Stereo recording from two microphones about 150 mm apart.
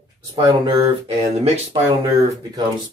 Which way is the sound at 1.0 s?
45° right (ahead or behind).